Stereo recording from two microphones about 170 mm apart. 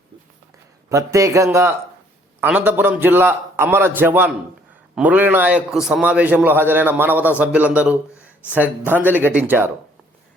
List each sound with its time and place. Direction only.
0.9 s a man's voice: 20° right (ahead or behind)